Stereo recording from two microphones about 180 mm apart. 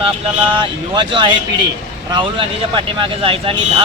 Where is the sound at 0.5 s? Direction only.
25° right (ahead or behind).